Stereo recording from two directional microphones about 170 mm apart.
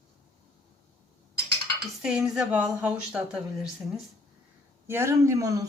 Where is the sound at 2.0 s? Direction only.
5° right (ahead or behind).